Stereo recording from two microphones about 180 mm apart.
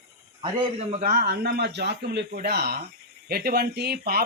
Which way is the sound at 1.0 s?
50° right (ahead or behind).